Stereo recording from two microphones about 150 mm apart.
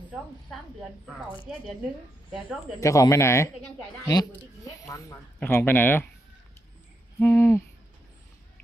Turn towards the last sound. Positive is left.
turn(degrees=15)  # may be behind; listen again after turning